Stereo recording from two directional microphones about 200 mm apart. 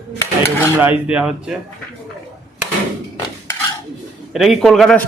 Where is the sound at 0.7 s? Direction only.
10° right (ahead or behind).